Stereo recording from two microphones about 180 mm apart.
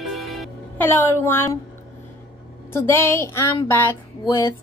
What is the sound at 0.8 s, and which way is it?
Speech, 10° left (ahead or behind).